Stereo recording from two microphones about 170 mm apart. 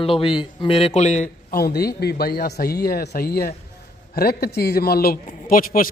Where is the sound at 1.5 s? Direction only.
65° left (ahead or behind).